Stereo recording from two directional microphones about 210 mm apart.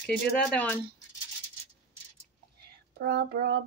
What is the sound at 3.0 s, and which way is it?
Speech, 50° right (ahead or behind).